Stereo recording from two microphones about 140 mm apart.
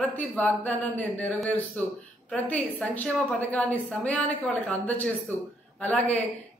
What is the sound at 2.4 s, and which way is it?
A woman's voice, 10° left (ahead or behind).